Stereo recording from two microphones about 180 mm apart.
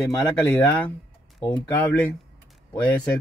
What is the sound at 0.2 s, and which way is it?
Speech, 10° left (ahead or behind).